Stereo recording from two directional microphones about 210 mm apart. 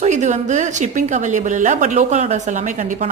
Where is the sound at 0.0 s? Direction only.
35° right (ahead or behind).